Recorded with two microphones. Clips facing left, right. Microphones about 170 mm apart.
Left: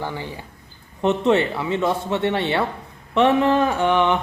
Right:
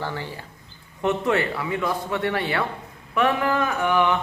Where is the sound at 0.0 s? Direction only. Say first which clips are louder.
Left 2 dB; 15° left (ahead or behind).